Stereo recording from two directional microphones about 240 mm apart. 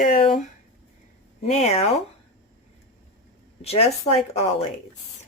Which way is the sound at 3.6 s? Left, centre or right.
Left.